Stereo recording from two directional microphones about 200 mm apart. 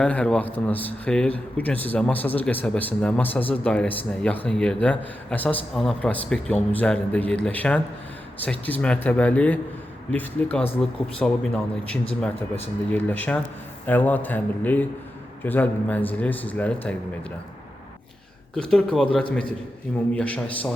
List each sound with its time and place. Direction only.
0.0 s speech: 5° left (ahead or behind)
18.7 s speech: 5° left (ahead or behind)